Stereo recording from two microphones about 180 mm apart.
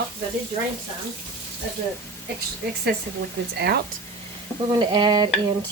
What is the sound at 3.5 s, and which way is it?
Speech, 60° right (ahead or behind).